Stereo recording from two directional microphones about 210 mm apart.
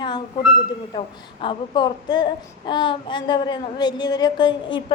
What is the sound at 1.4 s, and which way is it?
A woman's voice, 20° left (ahead or behind).